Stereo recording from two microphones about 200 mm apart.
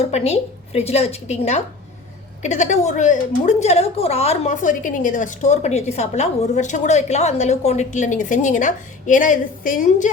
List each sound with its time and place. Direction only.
0.0 s a woman's voice: 30° left (ahead or behind)